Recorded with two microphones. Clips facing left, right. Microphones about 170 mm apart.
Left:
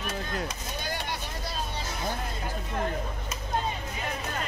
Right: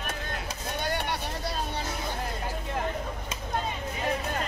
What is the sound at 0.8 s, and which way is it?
Vehicle, 60° right (ahead or behind).